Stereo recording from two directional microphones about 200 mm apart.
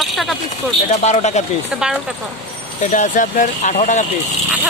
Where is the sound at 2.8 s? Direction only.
35° left (ahead or behind).